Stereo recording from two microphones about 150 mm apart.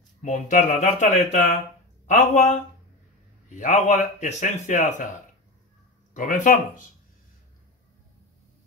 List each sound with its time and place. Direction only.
0.2 s speech: 55° left (ahead or behind)
6.1 s speech: 60° left (ahead or behind)